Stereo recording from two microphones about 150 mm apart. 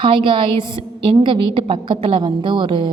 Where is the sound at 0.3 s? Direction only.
35° right (ahead or behind).